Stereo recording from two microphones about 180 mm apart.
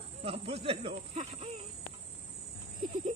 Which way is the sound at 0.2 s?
35° right (ahead or behind).